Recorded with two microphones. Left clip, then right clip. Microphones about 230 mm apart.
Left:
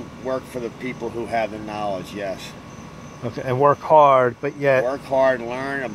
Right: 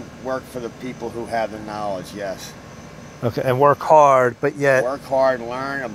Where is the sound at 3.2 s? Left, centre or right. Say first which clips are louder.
Right 2 dB; right.